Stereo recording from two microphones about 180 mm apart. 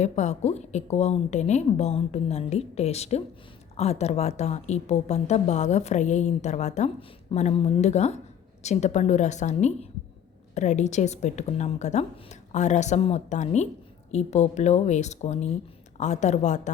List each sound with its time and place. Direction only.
0.0 s a woman's voice: 40° left (ahead or behind)